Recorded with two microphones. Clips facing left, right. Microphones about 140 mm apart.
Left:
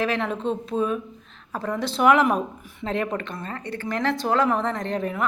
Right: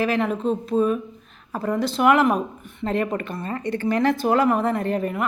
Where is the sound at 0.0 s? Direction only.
5° right (ahead or behind).